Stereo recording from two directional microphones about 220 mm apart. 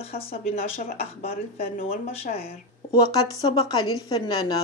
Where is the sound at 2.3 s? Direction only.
40° left (ahead or behind).